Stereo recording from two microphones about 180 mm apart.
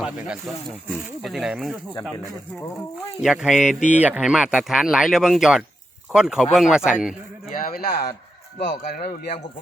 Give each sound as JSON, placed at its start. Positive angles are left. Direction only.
{"t": 0.0, "sound": "speech", "side_deg": 0}
{"t": 3.2, "sound": "speech", "side_deg": -5}
{"t": 7.6, "sound": "speech", "side_deg": 55}
{"t": 8.5, "sound": "speech", "side_deg": 65}